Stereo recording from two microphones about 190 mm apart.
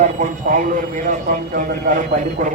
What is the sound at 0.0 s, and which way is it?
A man's voice, 40° right (ahead or behind).